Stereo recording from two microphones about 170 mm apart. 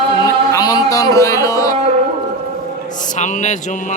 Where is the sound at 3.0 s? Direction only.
50° left (ahead or behind).